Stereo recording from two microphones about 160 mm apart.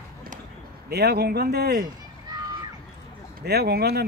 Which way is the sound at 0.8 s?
90° right.